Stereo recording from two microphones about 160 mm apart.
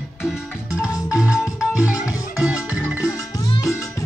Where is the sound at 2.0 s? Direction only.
20° left (ahead or behind).